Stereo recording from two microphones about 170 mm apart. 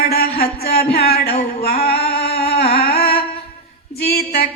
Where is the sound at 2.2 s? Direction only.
70° left (ahead or behind).